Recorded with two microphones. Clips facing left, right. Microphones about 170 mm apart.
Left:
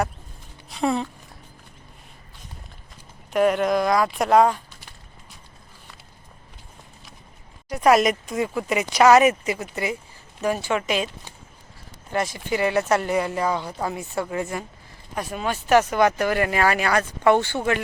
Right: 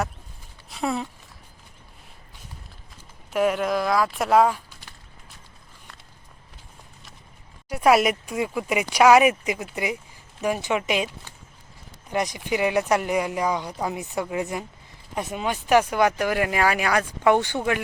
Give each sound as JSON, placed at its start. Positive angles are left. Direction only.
{"t": 0.7, "sound": "speech", "side_deg": -5}
{"t": 3.3, "sound": "speech", "side_deg": 0}
{"t": 7.7, "sound": "speech", "side_deg": -10}
{"t": 12.1, "sound": "speech", "side_deg": -15}